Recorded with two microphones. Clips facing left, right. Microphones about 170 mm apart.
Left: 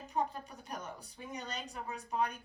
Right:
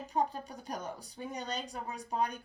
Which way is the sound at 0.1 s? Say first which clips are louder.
Right 3 dB; 35° right (ahead or behind).